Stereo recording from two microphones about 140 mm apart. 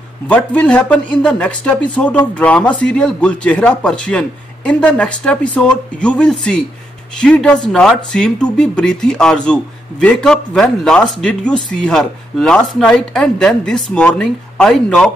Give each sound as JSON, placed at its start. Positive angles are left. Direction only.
{"t": 0.3, "sound": "a man's voice", "side_deg": 10}